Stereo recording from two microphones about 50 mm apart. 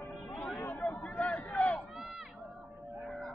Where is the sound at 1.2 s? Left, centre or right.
Left.